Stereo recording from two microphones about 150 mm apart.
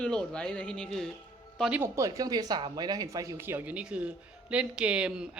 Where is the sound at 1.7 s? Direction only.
20° right (ahead or behind).